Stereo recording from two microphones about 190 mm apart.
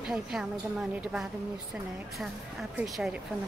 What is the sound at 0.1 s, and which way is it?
Speech, 5° right (ahead or behind).